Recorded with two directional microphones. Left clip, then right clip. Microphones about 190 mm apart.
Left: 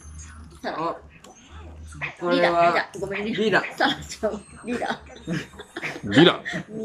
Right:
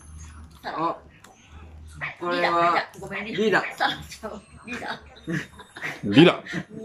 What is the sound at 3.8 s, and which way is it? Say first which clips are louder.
Speech: left 2 dB; 35° left (ahead or behind).